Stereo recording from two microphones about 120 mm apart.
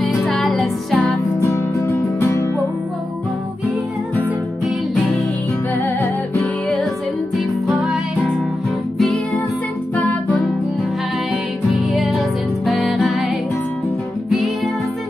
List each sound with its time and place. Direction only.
0.0 s music: centre (ahead or behind)
1.5 s music: 20° left (ahead or behind)
6.4 s music: 5° left (ahead or behind)
9.9 s music: 15° left (ahead or behind)
11.7 s music: centre (ahead or behind)